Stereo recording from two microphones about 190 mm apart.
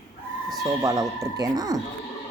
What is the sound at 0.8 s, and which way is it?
Speech, 20° right (ahead or behind).